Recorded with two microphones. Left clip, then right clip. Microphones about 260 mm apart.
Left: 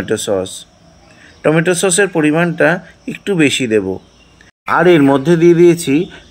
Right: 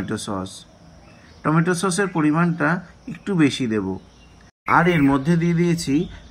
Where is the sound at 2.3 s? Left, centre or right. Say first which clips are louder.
Left 8 dB; centre.